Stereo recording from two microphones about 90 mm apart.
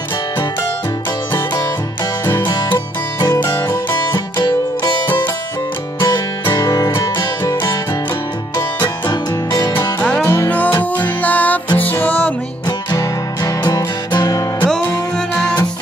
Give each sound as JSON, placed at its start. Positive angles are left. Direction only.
{"t": 3.2, "sound": "music", "side_deg": 45}
{"t": 6.4, "sound": "music", "side_deg": 40}
{"t": 9.1, "sound": "music", "side_deg": 50}
{"t": 9.9, "sound": "music", "side_deg": 10}
{"t": 10.2, "sound": "music", "side_deg": 30}
{"t": 10.5, "sound": "music", "side_deg": 15}
{"t": 12.6, "sound": "music", "side_deg": 45}
{"t": 15.1, "sound": "music", "side_deg": 10}